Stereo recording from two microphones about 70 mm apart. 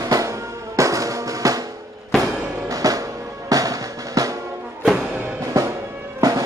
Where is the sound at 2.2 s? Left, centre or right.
Right.